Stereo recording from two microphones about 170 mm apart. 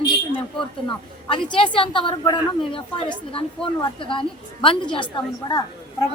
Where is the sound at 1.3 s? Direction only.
30° left (ahead or behind).